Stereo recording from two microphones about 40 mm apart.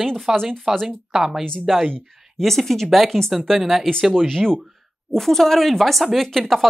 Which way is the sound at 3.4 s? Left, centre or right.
Centre.